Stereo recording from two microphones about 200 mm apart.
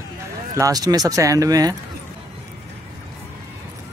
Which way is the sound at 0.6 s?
20° right (ahead or behind).